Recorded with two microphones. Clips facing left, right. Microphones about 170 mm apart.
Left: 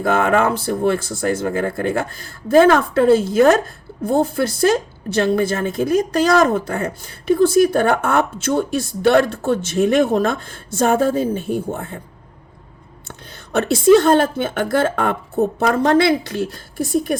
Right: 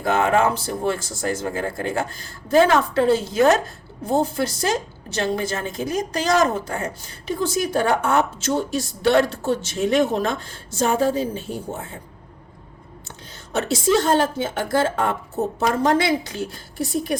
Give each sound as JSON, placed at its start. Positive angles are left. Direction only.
{"t": 0.0, "sound": "a woman's voice", "side_deg": 50}
{"t": 13.1, "sound": "a woman's voice", "side_deg": 60}